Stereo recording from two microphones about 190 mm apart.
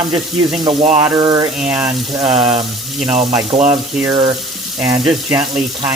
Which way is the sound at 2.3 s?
35° right (ahead or behind).